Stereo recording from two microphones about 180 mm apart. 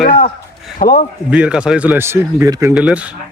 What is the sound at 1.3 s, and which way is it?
Speech, 5° right (ahead or behind).